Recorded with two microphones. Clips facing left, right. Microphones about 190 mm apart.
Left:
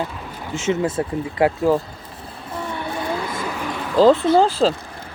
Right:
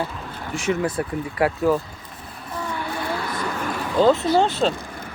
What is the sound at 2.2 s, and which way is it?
Vehicle, 25° left (ahead or behind).